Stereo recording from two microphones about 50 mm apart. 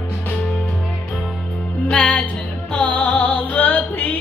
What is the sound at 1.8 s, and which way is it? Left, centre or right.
Music, centre.